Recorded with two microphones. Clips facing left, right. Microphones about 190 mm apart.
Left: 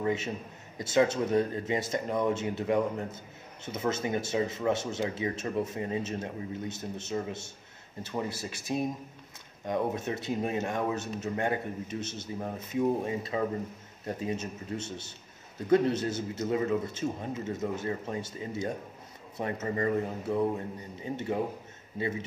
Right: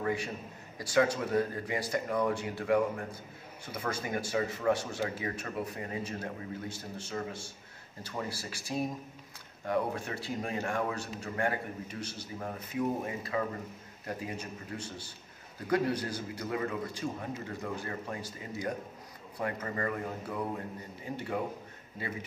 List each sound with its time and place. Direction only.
0.0 s a man's voice: 20° left (ahead or behind)